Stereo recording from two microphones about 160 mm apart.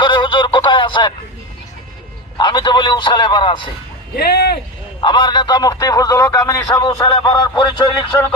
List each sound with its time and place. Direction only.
0.0 s a sound: 30° left (ahead or behind)
2.4 s speech: 30° left (ahead or behind)
4.2 s speech: 90° left
4.9 s speech: 30° left (ahead or behind)